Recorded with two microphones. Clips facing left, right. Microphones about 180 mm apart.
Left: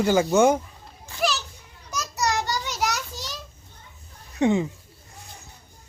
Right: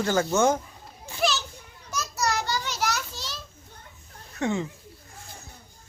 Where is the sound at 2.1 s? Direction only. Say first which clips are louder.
Left 2 dB; 20° left (ahead or behind).